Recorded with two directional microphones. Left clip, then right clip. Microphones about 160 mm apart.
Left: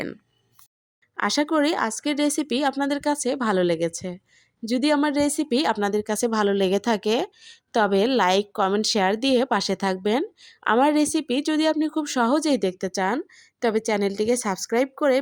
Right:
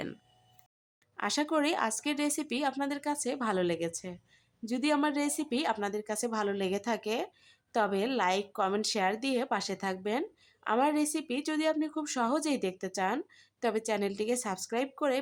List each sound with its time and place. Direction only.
1.1 s speech: 35° left (ahead or behind)